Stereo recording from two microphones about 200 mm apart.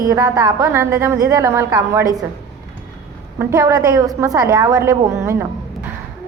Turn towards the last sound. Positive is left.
turn(degrees=-15)  # may be behind; listen again after turning